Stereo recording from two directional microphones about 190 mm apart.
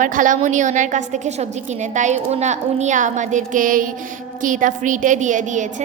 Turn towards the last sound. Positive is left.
turn(degrees=-40)  # may be behind; listen again after turning